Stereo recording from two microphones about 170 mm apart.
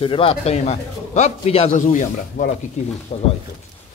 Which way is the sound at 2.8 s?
40° left (ahead or behind).